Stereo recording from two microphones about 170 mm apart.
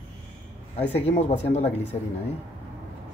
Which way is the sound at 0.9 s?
40° left (ahead or behind).